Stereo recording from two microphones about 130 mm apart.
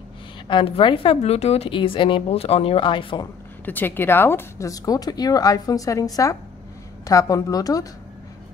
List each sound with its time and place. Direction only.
0.5 s a woman's voice: 40° left (ahead or behind)
3.6 s speech: 15° left (ahead or behind)